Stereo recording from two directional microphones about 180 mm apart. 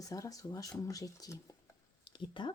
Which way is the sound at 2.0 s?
25° left (ahead or behind).